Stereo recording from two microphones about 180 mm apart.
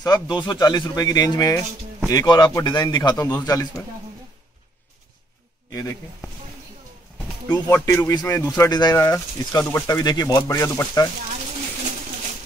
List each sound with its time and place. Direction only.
0.0 s speech: 25° left (ahead or behind)
5.7 s speech: 20° left (ahead or behind)
7.7 s a man's voice: 10° left (ahead or behind)